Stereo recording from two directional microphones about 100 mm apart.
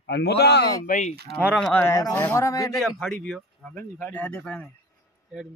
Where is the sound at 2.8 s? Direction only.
5° left (ahead or behind).